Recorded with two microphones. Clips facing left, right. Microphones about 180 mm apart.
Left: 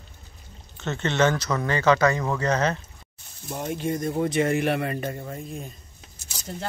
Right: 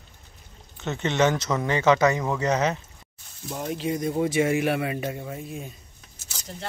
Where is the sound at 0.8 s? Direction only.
15° right (ahead or behind).